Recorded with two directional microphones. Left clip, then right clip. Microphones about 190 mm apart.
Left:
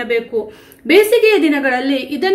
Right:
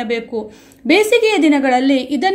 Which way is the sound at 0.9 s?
45° right (ahead or behind).